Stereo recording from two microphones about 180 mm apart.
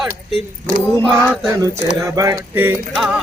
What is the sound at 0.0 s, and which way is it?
Speech, centre (ahead or behind).